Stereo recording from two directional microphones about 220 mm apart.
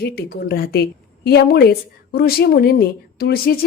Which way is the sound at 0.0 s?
45° left (ahead or behind).